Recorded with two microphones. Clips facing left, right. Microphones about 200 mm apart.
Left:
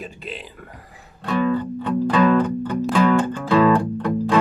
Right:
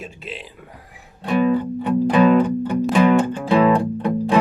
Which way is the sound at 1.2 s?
15° right (ahead or behind).